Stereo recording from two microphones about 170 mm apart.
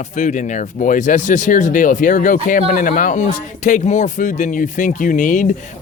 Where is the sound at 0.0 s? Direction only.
45° left (ahead or behind).